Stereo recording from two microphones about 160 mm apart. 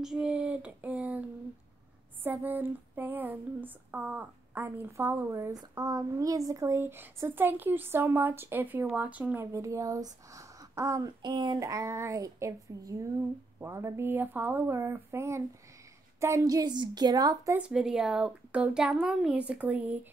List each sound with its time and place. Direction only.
0.0 s child singing: 5° right (ahead or behind)
2.2 s female singing: 10° right (ahead or behind)
16.2 s speech: 20° right (ahead or behind)
17.6 s speech: 5° right (ahead or behind)